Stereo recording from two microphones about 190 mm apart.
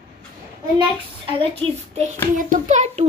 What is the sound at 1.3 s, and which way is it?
A woman's voice, 30° right (ahead or behind).